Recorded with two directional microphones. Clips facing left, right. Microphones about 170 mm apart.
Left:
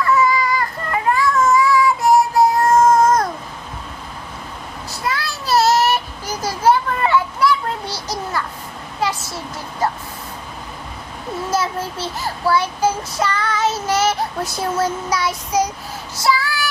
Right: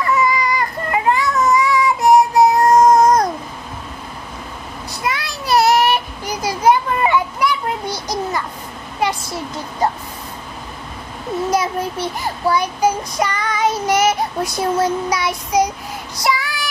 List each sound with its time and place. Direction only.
0.0 s baby cry: 20° right (ahead or behind)
5.0 s child singing: 20° right (ahead or behind)
8.1 s a sound: 15° right (ahead or behind)
11.3 s child singing: 15° right (ahead or behind)